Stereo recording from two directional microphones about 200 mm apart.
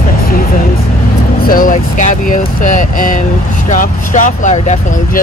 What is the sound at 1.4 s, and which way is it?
Vehicle, 45° left (ahead or behind).